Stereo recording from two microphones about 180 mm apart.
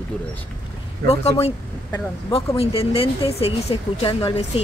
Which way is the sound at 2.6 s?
30° left (ahead or behind).